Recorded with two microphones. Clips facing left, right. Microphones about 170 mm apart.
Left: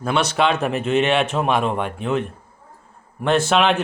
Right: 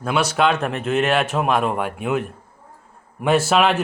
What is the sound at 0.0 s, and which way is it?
A man's voice, 5° right (ahead or behind).